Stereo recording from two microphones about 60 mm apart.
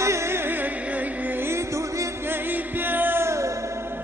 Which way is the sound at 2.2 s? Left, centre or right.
Right.